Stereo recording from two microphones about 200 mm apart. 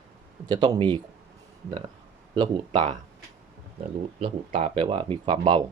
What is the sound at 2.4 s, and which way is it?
Speech, 25° right (ahead or behind).